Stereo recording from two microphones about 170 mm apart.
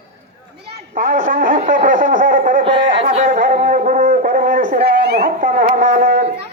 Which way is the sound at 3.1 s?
50° right (ahead or behind).